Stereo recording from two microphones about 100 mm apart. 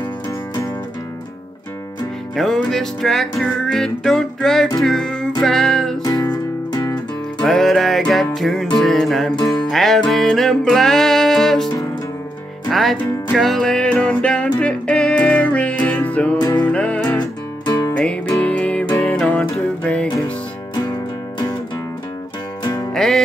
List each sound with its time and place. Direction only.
2.3 s music: 5° left (ahead or behind)
7.4 s music: 5° left (ahead or behind)
16.3 s music: 40° left (ahead or behind)
16.6 s music: 10° left (ahead or behind)
17.2 s music: 40° left (ahead or behind)
17.9 s music: 10° left (ahead or behind)
22.9 s music: 5° left (ahead or behind)